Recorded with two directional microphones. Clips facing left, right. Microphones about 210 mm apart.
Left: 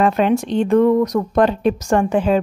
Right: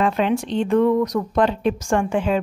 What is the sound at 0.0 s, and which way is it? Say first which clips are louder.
A woman's voice: left 4 dB; 45° left (ahead or behind).